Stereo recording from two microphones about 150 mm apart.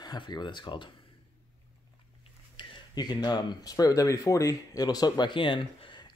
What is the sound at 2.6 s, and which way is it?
Speech, 30° left (ahead or behind).